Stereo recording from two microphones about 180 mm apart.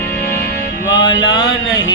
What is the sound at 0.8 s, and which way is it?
Mantra, 90° left.